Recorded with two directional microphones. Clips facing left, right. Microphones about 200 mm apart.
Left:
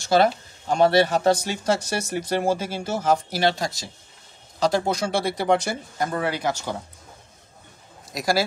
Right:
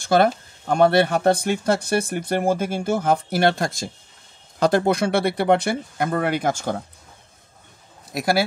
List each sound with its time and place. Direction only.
0.0 s speech: 55° right (ahead or behind)
8.1 s speech: 60° right (ahead or behind)